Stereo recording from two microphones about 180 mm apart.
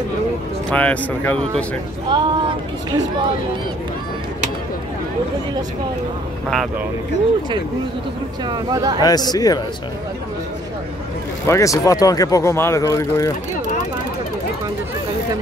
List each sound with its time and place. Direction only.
0.7 s speech: 5° left (ahead or behind)
2.0 s speech: 25° right (ahead or behind)
8.5 s speech: 20° right (ahead or behind)
9.0 s speech: 20° left (ahead or behind)
11.4 s speech: 15° left (ahead or behind)